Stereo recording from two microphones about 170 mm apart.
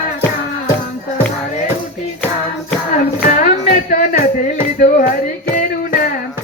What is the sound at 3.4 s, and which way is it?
Music, 50° left (ahead or behind).